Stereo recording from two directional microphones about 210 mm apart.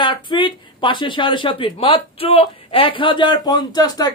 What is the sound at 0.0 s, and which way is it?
A woman's voice, 20° left (ahead or behind).